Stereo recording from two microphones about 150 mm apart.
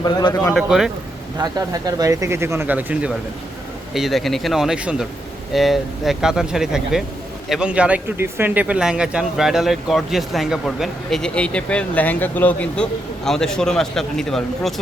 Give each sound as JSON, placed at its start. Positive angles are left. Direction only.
{"t": 0.0, "sound": "a man's voice", "side_deg": 25}
{"t": 0.5, "sound": "speech", "side_deg": 0}
{"t": 1.4, "sound": "speech", "side_deg": -25}